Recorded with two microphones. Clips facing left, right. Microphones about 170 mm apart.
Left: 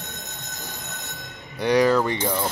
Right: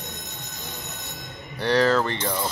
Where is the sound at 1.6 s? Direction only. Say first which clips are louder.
Left 2 dB; 15° left (ahead or behind).